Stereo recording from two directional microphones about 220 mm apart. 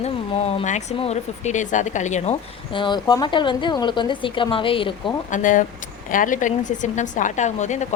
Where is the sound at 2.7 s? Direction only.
20° left (ahead or behind).